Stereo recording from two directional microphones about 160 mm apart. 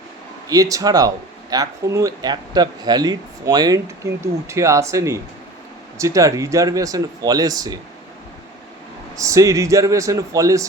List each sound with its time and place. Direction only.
0.4 s speech: 20° right (ahead or behind)
9.1 s speech: 20° right (ahead or behind)